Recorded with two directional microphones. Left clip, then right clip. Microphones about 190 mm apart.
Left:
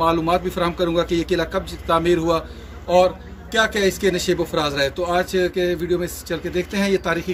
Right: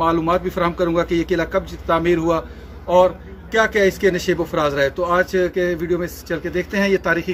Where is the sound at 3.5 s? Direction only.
5° left (ahead or behind).